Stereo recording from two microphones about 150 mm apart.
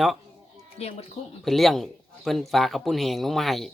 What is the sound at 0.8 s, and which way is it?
Speech, 45° left (ahead or behind).